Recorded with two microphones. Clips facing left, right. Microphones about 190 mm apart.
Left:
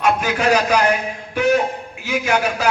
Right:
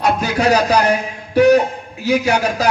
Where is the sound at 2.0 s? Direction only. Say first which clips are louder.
Right 4 dB; 35° right (ahead or behind).